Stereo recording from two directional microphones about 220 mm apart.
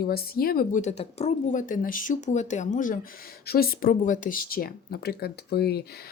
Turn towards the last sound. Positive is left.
turn(degrees=45)  # may be behind; listen again after turning